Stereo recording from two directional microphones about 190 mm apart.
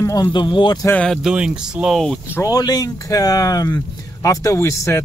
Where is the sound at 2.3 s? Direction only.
20° left (ahead or behind).